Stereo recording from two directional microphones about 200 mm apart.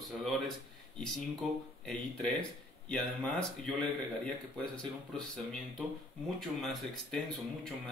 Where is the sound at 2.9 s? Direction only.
5° left (ahead or behind).